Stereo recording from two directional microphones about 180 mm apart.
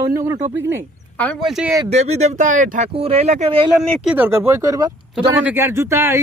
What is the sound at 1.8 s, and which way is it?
Speech, 40° right (ahead or behind).